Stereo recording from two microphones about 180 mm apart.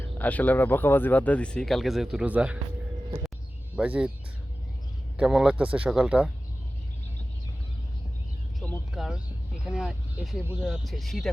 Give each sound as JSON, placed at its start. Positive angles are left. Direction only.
{"t": 0.2, "sound": "speech", "side_deg": 10}
{"t": 3.8, "sound": "speech", "side_deg": -5}
{"t": 5.1, "sound": "speech", "side_deg": -5}
{"t": 8.5, "sound": "a sound", "side_deg": 5}
{"t": 9.6, "sound": "speech", "side_deg": -5}